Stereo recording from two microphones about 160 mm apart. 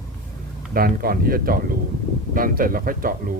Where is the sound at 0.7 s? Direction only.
65° right (ahead or behind).